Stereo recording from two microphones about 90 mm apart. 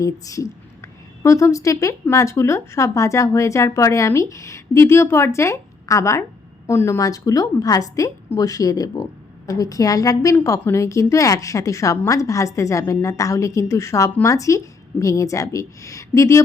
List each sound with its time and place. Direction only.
0.0 s a woman's voice: 40° left (ahead or behind)
7.0 s a woman's voice: 40° left (ahead or behind)